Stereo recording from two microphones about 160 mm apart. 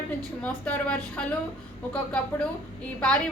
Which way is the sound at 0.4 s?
10° left (ahead or behind).